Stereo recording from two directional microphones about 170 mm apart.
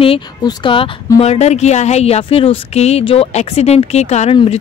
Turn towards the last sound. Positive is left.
turn(degrees=40)  # may be behind; listen again after turning